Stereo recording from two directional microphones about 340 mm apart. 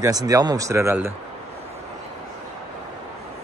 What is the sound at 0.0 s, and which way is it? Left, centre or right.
Speech, centre.